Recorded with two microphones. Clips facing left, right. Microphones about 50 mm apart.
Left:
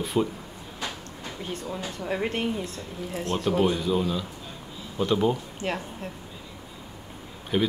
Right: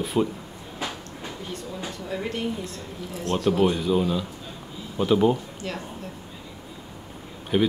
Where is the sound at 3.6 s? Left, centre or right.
Centre.